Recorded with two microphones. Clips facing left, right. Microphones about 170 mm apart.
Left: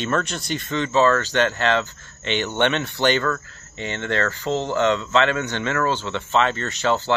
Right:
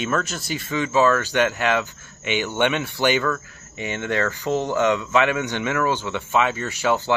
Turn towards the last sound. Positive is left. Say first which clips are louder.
# even
turn(degrees=-10)  # may be behind; listen again after turning